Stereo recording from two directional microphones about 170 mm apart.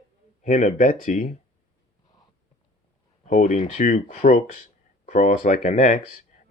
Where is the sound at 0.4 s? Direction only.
50° left (ahead or behind).